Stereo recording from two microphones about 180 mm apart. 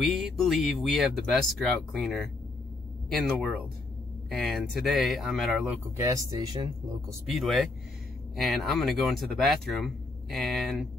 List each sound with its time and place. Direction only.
0.0 s speech: centre (ahead or behind)
5.9 s speech: 20° right (ahead or behind)
7.2 s speech: centre (ahead or behind)